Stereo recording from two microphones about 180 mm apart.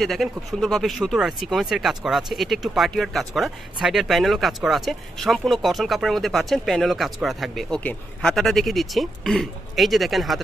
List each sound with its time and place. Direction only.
0.0 s speech: centre (ahead or behind)